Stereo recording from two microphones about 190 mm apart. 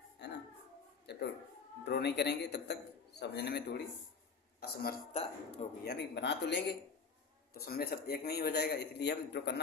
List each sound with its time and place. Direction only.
0.2 s a sound: 60° left (ahead or behind)
1.1 s a man's voice: 60° left (ahead or behind)
4.6 s speech: 50° left (ahead or behind)
5.1 s speech: 35° left (ahead or behind)
5.8 s a man's voice: 60° left (ahead or behind)
7.5 s a man's voice: 50° left (ahead or behind)